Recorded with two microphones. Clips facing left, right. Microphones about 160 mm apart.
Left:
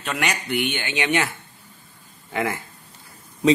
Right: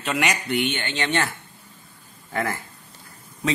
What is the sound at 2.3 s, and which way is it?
Speech, 10° left (ahead or behind).